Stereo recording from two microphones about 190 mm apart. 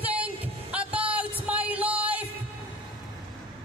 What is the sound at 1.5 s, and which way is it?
Music, 10° right (ahead or behind).